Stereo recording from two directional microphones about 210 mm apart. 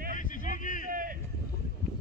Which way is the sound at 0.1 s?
40° left (ahead or behind).